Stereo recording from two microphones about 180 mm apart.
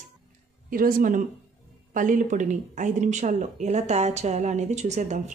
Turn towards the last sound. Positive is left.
turn(degrees=-40)  # may be behind; listen again after turning